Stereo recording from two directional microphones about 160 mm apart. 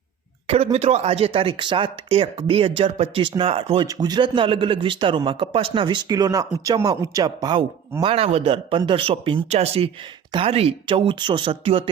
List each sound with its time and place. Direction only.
0.4 s speech: 40° right (ahead or behind)